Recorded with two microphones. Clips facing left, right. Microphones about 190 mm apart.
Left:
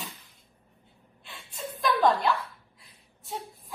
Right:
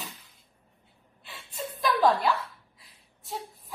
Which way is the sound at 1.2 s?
Centre (ahead or behind).